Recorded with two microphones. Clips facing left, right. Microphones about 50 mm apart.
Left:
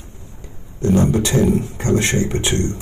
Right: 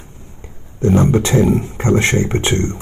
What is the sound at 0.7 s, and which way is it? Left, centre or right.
Speech, right.